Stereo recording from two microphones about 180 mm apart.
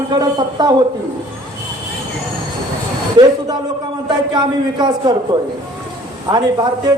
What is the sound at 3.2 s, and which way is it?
Speech, 25° right (ahead or behind).